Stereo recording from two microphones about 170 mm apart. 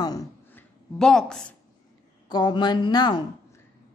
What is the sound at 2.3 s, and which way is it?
Speech, 25° left (ahead or behind).